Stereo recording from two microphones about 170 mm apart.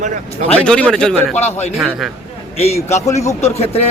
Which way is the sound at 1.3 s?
40° left (ahead or behind).